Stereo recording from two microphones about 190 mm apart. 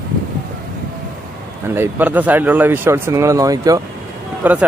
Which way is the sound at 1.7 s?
10° right (ahead or behind).